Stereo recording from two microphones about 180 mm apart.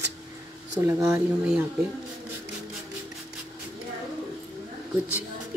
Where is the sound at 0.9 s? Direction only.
15° right (ahead or behind).